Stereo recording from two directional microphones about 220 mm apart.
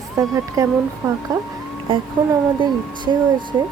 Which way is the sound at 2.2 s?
20° right (ahead or behind).